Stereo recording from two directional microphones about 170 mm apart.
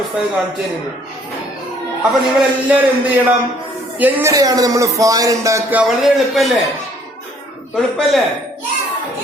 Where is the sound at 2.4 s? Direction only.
10° right (ahead or behind).